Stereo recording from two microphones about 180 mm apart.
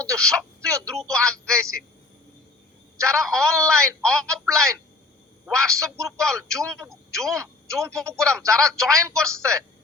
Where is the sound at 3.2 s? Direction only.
5° left (ahead or behind).